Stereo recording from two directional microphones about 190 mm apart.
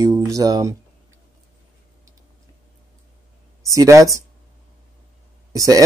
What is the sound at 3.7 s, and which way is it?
Speech, 15° right (ahead or behind).